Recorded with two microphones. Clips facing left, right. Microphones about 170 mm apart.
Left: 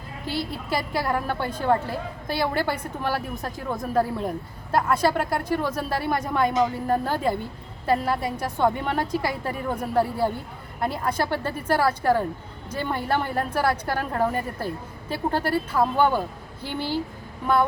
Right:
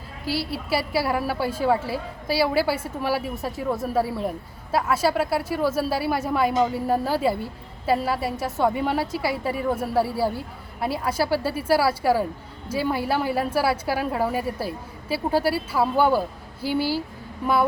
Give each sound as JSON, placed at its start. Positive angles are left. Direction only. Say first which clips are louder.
{"t": 0.3, "sound": "a woman's voice", "louder": "right 2 dB", "side_deg": -5}